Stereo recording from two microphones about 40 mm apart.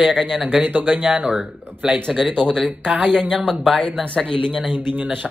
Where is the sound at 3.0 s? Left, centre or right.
Right.